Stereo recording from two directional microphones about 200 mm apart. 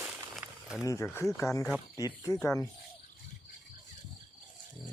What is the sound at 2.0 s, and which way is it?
Speech, 15° left (ahead or behind).